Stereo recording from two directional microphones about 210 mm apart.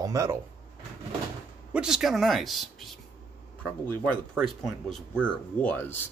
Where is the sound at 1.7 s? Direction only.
Centre (ahead or behind).